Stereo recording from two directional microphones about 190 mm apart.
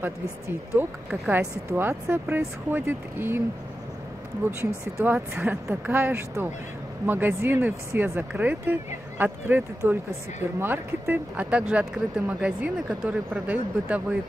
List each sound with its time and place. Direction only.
0.7 s speech: 5° right (ahead or behind)
4.5 s speech: 15° right (ahead or behind)